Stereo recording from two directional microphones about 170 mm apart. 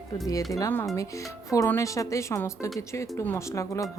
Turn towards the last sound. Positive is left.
turn(degrees=20)  # may be behind; listen again after turning